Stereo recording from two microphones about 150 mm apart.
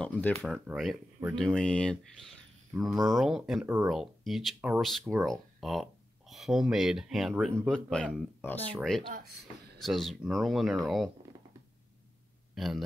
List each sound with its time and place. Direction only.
0.0 s speech: 5° left (ahead or behind)
3.6 s speech: 15° right (ahead or behind)
3.9 s speech: centre (ahead or behind)
12.5 s a man's voice: centre (ahead or behind)